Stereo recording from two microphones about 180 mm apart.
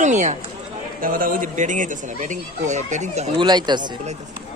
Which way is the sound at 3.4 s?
25° right (ahead or behind).